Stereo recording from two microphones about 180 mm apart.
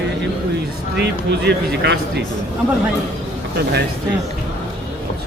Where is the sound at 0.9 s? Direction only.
70° right (ahead or behind).